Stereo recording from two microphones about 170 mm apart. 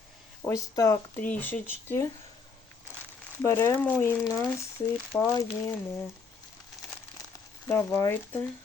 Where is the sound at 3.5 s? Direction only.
15° left (ahead or behind).